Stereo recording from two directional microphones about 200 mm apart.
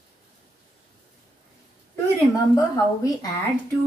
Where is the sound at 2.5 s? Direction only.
15° left (ahead or behind).